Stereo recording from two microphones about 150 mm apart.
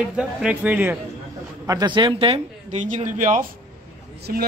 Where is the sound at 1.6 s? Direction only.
25° right (ahead or behind).